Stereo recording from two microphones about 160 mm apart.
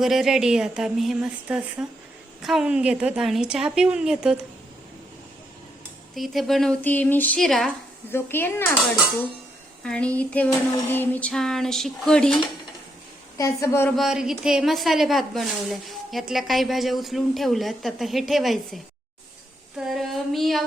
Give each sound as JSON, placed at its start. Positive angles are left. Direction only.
{"t": 0.0, "sound": "a woman's voice", "side_deg": -5}
{"t": 6.1, "sound": "a woman's voice", "side_deg": 0}
{"t": 8.1, "sound": "speech", "side_deg": 15}
{"t": 9.8, "sound": "a woman's voice", "side_deg": 5}
{"t": 13.3, "sound": "a woman's voice", "side_deg": 20}
{"t": 13.9, "sound": "a woman's voice", "side_deg": 0}